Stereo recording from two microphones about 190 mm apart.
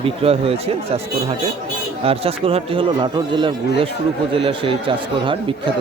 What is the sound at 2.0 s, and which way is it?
A man's voice, 30° right (ahead or behind).